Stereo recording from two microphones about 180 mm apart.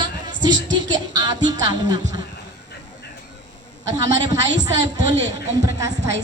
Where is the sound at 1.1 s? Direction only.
25° right (ahead or behind).